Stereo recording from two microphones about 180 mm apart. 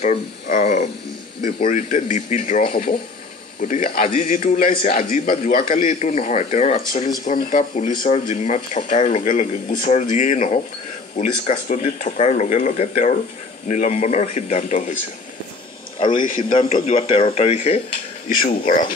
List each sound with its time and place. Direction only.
0.0 s a man's voice: 40° left (ahead or behind)
16.0 s a man's voice: 30° left (ahead or behind)
18.3 s a man's voice: 50° left (ahead or behind)